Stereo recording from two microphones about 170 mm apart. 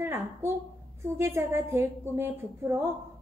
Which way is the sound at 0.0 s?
15° right (ahead or behind).